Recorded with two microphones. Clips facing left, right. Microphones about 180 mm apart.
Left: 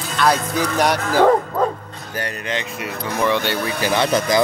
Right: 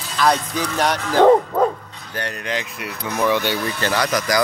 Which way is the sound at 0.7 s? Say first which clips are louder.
Even; 10° left (ahead or behind).